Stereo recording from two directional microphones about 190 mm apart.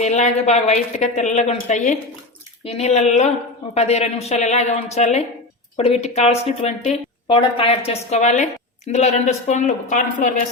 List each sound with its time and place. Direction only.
0.0 s a woman's voice: 35° left (ahead or behind)